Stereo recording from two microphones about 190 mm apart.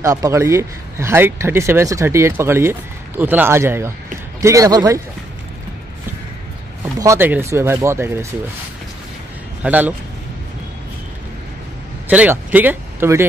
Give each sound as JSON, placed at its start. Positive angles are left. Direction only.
{"t": 0.0, "sound": "speech", "side_deg": -15}
{"t": 6.8, "sound": "speech", "side_deg": -15}
{"t": 9.6, "sound": "a man's voice", "side_deg": -10}
{"t": 12.1, "sound": "speech", "side_deg": -10}